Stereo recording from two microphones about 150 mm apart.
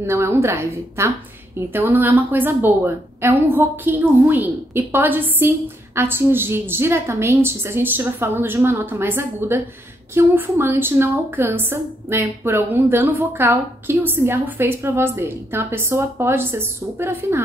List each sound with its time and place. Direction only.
0.0 s a woman's voice: 15° right (ahead or behind)